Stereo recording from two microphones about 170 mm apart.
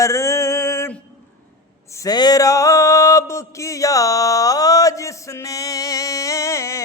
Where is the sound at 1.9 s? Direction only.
20° left (ahead or behind).